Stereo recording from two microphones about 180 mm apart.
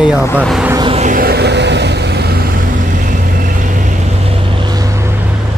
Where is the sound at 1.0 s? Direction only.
50° right (ahead or behind); by 2.4 s 65° right (ahead or behind).